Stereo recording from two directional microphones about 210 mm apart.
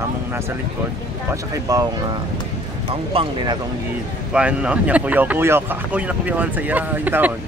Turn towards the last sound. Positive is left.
turn(degrees=-10)  # may be behind; listen again after turning